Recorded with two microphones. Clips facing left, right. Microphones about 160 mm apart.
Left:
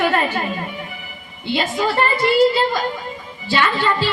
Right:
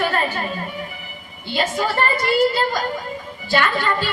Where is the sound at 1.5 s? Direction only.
45° right (ahead or behind).